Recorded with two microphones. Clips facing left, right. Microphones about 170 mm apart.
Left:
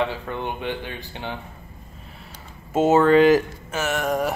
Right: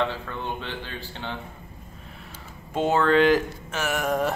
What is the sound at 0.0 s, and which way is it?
Speech, 15° left (ahead or behind).